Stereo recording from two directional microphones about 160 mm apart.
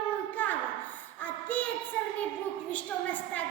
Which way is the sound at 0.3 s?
10° left (ahead or behind).